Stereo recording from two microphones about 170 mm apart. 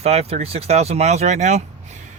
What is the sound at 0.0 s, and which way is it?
Speech, 40° right (ahead or behind).